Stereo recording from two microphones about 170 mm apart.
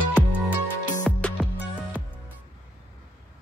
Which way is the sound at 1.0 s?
5° left (ahead or behind).